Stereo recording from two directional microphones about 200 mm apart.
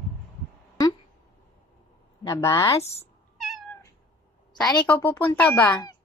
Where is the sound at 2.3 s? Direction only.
15° left (ahead or behind).